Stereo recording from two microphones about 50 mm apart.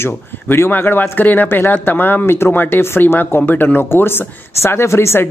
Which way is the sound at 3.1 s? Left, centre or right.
Left.